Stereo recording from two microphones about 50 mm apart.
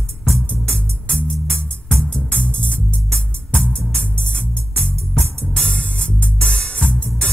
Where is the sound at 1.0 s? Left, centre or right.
Left.